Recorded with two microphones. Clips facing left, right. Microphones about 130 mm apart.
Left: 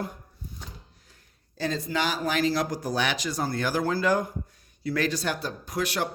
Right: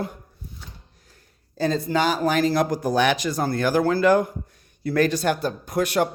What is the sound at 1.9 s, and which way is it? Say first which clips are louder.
Speech: right 6 dB; 45° right (ahead or behind).